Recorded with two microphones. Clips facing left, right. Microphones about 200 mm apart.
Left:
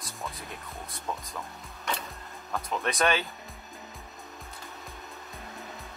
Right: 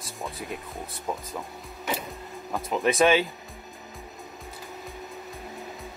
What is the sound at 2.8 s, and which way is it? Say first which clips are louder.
Speech: right 7 dB; centre (ahead or behind).